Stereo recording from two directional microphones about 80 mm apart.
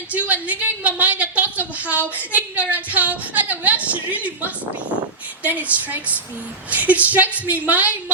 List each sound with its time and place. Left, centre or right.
0.1 s a woman's voice: centre